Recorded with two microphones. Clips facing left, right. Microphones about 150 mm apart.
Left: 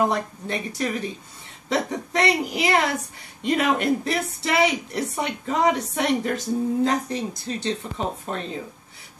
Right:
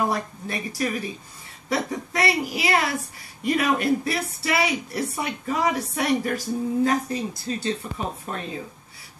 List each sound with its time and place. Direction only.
0.0 s speech: 20° left (ahead or behind)